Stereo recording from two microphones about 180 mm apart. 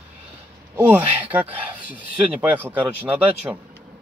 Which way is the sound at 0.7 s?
10° right (ahead or behind).